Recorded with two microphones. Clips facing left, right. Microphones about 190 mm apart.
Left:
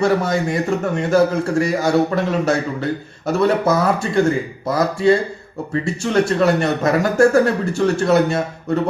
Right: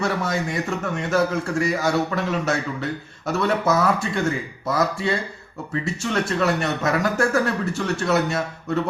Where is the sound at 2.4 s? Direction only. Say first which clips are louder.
Left 5 dB; centre (ahead or behind).